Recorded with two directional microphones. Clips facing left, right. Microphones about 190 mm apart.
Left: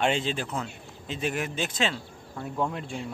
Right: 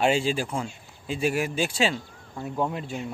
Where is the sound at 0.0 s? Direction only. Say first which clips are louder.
Right 3 dB; 10° right (ahead or behind).